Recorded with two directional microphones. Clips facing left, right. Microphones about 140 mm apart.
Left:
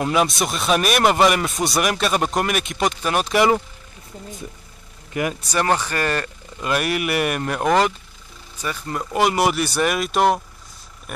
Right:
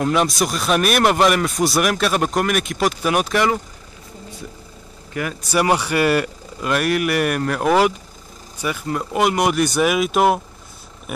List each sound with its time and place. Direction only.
0.0 s speech: 5° left (ahead or behind)
5.2 s speech: 20° left (ahead or behind)
5.5 s speech: 10° right (ahead or behind)
6.6 s speech: centre (ahead or behind)
11.1 s a sound: 5° right (ahead or behind)